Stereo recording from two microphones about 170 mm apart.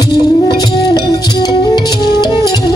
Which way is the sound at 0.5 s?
25° left (ahead or behind).